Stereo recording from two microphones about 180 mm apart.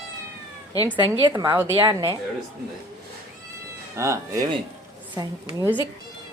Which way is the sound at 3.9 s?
15° right (ahead or behind).